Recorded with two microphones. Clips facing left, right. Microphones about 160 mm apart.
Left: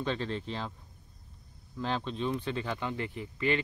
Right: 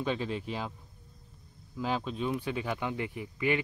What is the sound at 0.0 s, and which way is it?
Speech, 10° right (ahead or behind).